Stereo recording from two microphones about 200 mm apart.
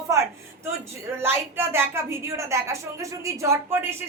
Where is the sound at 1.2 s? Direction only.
10° right (ahead or behind).